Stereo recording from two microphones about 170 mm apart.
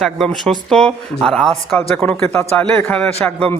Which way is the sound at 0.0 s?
Centre (ahead or behind).